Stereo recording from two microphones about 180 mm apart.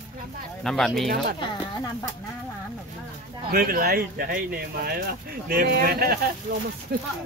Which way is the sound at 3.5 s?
55° right (ahead or behind).